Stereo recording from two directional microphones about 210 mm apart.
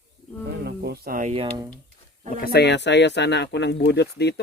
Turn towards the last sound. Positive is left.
turn(degrees=55)  # may be behind; listen again after turning